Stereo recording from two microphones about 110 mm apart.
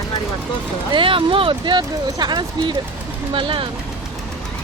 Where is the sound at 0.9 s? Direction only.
55° right (ahead or behind).